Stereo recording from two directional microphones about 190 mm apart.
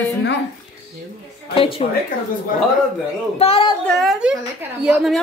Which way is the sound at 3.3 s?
30° left (ahead or behind).